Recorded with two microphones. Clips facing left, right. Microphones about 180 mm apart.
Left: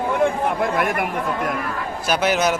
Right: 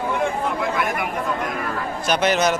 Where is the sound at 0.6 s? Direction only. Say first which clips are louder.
Left 3 dB; 55° left (ahead or behind).